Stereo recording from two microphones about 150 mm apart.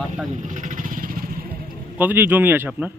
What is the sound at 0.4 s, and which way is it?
Vehicle, 55° right (ahead or behind).